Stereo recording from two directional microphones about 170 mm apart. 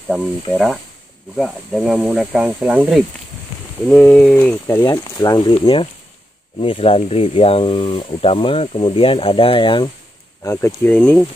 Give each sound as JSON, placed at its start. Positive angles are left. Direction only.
{"t": 0.1, "sound": "speech", "side_deg": -5}
{"t": 4.6, "sound": "speech", "side_deg": 20}
{"t": 10.4, "sound": "speech", "side_deg": 15}